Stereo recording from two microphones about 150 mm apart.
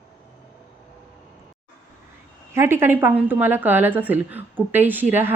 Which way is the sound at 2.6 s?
15° right (ahead or behind).